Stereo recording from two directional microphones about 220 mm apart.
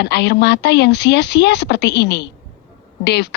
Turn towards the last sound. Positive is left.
turn(degrees=50)  # may be behind; listen again after turning